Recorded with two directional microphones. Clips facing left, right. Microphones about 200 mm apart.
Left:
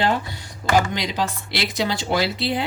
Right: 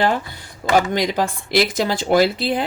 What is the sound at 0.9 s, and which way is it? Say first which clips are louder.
Speech: right 5 dB; 50° right (ahead or behind).